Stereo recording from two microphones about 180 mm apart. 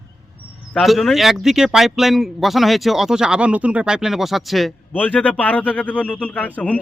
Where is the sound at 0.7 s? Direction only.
Centre (ahead or behind).